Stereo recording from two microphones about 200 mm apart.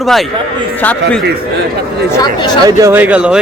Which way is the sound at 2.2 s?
20° left (ahead or behind).